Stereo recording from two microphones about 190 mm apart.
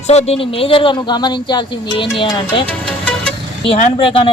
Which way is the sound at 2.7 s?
5° left (ahead or behind).